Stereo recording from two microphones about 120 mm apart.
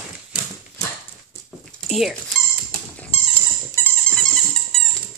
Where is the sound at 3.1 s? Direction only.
55° left (ahead or behind).